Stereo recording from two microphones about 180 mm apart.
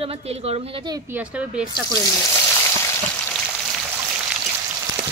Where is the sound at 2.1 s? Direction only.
10° left (ahead or behind).